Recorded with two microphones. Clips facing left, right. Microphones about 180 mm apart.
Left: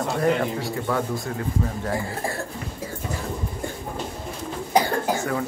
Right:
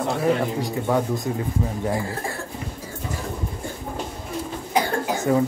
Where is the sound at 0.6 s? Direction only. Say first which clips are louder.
Right 3 dB; 20° right (ahead or behind).